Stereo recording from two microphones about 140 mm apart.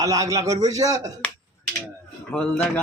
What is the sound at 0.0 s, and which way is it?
A man's voice, 25° right (ahead or behind).